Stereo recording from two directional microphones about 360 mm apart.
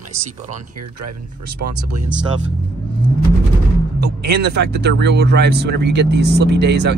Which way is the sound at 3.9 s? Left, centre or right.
Right.